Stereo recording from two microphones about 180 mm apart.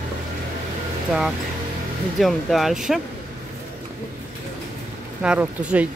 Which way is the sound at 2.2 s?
Centre (ahead or behind).